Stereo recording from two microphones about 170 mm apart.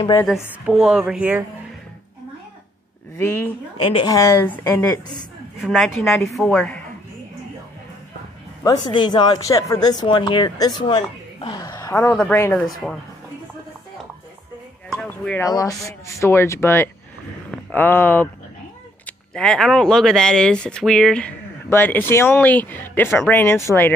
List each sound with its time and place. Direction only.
0.3 s speech: 5° right (ahead or behind)
3.2 s speech: 15° left (ahead or behind)
5.6 s speech: centre (ahead or behind)
8.6 s speech: 25° left (ahead or behind)
15.0 s a sound: 10° left (ahead or behind)
15.5 s speech: 20° left (ahead or behind)